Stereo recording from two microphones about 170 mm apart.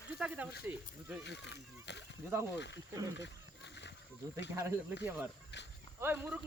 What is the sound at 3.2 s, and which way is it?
Wild animals, 90° left.